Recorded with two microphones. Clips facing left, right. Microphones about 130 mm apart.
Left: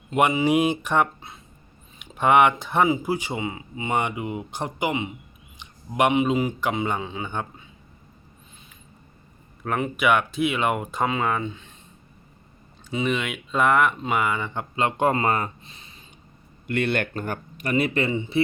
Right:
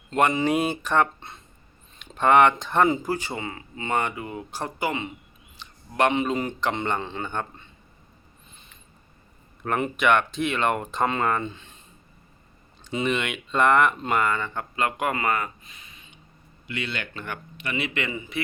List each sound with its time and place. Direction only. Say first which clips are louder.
0.1 s speech: left 2 dB; 10° left (ahead or behind)
9.6 s speech: even; centre (ahead or behind)
12.9 s speech: even; centre (ahead or behind); by 16.0 s 30° left (ahead or behind)
16.6 s speech: left 8 dB; 55° left (ahead or behind); by 18.3 s 30° left (ahead or behind)